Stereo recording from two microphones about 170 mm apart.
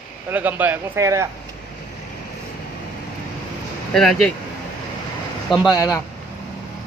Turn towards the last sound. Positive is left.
turn(degrees=20)  # may be behind; listen again after turning